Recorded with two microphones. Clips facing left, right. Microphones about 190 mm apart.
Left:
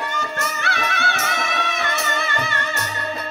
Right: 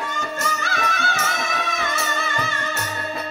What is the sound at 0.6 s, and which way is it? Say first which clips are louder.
Music: left 1 dB; 65° left (ahead or behind).